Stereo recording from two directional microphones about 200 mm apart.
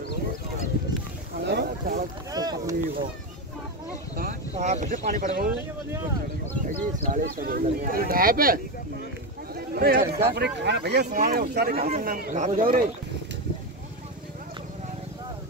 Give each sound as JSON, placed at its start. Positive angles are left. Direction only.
{"t": 1.4, "sound": "a sound", "side_deg": -55}
{"t": 2.3, "sound": "boat", "side_deg": -20}
{"t": 4.2, "sound": "speech", "side_deg": -40}
{"t": 6.6, "sound": "speech", "side_deg": -45}
{"t": 9.8, "sound": "speech", "side_deg": -50}